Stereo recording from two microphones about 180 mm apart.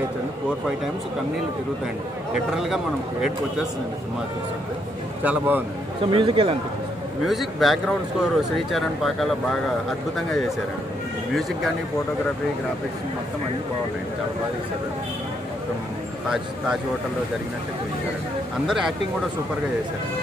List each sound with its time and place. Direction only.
2.3 s a man's voice: 5° right (ahead or behind)
5.2 s speech: 10° right (ahead or behind)
6.0 s a man's voice: 30° right (ahead or behind)
7.2 s a man's voice: centre (ahead or behind)
18.7 s a man's voice: centre (ahead or behind)